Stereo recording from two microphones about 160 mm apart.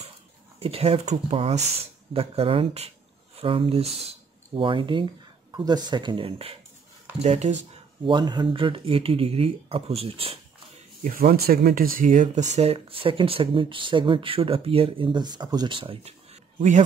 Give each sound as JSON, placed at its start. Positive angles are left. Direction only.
{"t": 0.6, "sound": "speech", "side_deg": -40}
{"t": 8.0, "sound": "speech", "side_deg": -30}
{"t": 11.1, "sound": "speech", "side_deg": -65}